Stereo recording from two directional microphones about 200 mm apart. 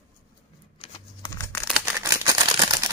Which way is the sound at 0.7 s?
30° left (ahead or behind).